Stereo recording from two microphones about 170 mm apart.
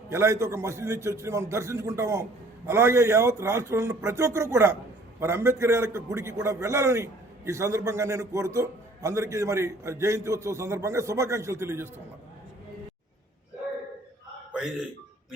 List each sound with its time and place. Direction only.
0.1 s a man's voice: 15° right (ahead or behind)
14.5 s a man's voice: 5° right (ahead or behind)